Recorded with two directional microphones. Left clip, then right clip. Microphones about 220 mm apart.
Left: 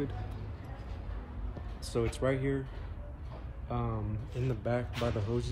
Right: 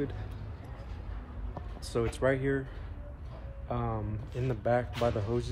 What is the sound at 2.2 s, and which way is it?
Speech, 15° left (ahead or behind).